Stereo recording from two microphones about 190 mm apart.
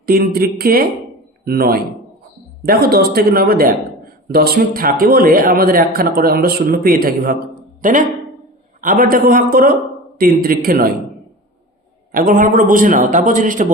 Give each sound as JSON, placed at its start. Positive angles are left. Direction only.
{"t": 0.0, "sound": "a man's voice", "side_deg": -50}
{"t": 12.1, "sound": "a man's voice", "side_deg": -45}